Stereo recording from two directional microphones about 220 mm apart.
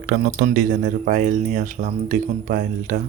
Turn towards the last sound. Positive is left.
turn(degrees=-35)  # may be behind; listen again after turning